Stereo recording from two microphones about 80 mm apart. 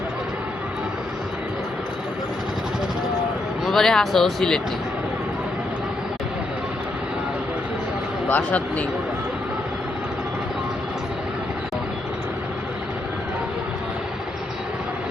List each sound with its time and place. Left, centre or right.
3.7 s speech: centre
8.3 s speech: centre